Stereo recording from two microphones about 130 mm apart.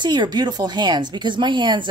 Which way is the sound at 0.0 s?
35° right (ahead or behind).